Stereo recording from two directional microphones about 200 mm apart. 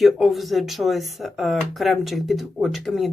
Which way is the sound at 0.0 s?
Centre (ahead or behind).